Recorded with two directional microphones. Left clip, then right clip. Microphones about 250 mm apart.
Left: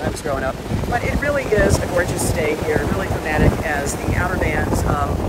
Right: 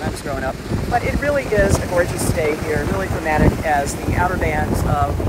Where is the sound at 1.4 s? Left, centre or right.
Centre.